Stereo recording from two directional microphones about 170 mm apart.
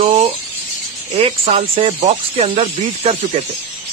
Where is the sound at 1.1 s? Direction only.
40° right (ahead or behind).